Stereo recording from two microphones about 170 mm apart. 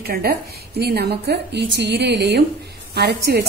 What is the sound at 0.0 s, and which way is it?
A woman's voice, 60° right (ahead or behind).